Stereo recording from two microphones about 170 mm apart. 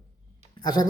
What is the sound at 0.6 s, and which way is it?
Speech, 20° left (ahead or behind).